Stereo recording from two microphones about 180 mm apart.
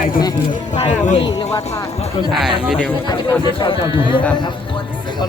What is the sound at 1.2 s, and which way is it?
Speech, 20° left (ahead or behind).